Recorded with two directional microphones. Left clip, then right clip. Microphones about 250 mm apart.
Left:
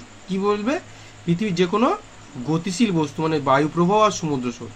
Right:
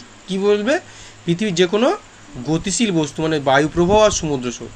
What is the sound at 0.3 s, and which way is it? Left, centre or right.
Speech, centre.